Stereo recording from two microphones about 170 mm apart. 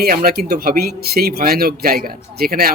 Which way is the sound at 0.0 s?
60° right (ahead or behind).